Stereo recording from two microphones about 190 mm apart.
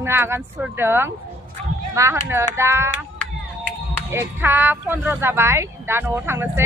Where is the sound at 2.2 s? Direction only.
15° right (ahead or behind).